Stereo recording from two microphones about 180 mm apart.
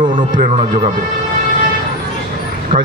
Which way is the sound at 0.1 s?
45° right (ahead or behind).